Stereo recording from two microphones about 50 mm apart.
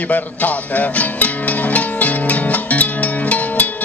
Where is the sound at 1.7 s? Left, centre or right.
Left.